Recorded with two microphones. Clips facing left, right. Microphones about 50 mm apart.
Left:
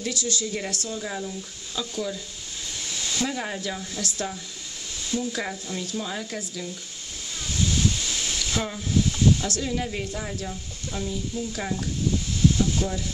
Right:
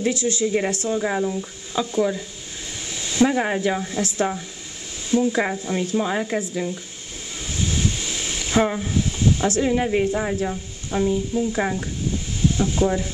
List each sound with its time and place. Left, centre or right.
0.0 s speech: right
7.4 s a sound: right
12.5 s speech: right